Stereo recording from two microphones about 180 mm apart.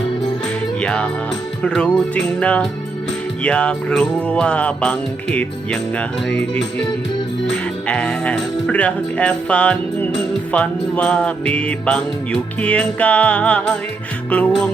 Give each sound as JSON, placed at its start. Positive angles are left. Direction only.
{"t": 0.8, "sound": "music", "side_deg": 5}
{"t": 1.6, "sound": "speech", "side_deg": 5}
{"t": 3.4, "sound": "music", "side_deg": 5}
{"t": 7.5, "sound": "speech", "side_deg": 5}